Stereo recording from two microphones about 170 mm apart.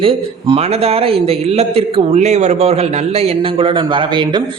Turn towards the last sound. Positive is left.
turn(degrees=-25)  # may be behind; listen again after turning